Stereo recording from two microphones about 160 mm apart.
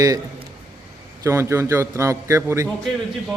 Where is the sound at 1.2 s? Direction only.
15° right (ahead or behind).